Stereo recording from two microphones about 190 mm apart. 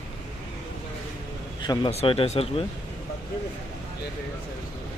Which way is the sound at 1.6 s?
25° left (ahead or behind).